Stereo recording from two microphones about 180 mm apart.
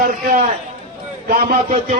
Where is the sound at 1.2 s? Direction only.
40° right (ahead or behind).